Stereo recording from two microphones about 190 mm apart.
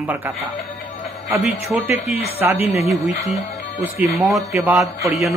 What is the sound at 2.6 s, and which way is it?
Speech, 35° left (ahead or behind).